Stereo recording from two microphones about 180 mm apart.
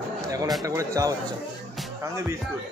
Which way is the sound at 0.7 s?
20° right (ahead or behind).